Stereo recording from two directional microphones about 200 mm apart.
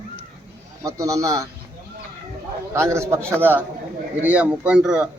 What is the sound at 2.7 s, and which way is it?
A man's voice, 15° right (ahead or behind).